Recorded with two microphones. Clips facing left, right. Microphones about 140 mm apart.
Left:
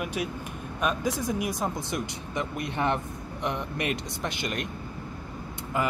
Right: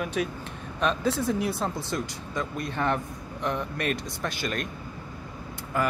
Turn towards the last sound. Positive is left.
turn(degrees=20)  # may be behind; listen again after turning